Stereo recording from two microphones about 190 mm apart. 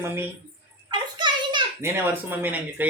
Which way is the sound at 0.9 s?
25° right (ahead or behind).